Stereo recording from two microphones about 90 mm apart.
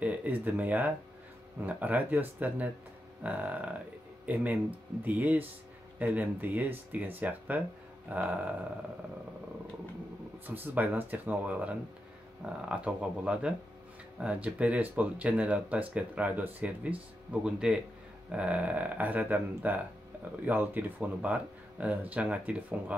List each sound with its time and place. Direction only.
0.0 s speech: 15° right (ahead or behind)
10.4 s speech: 20° right (ahead or behind)